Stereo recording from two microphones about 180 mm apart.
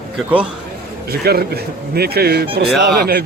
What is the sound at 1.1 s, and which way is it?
Speech, 60° right (ahead or behind).